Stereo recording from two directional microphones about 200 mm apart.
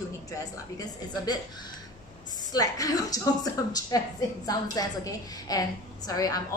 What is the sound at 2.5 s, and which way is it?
A woman's voice, 15° left (ahead or behind).